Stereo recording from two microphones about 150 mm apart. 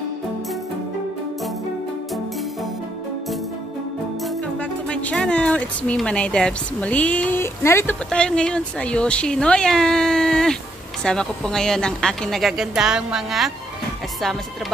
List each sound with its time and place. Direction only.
4.2 s speech: 10° left (ahead or behind)